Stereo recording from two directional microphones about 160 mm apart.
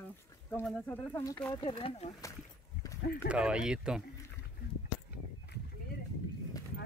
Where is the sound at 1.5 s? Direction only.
35° left (ahead or behind).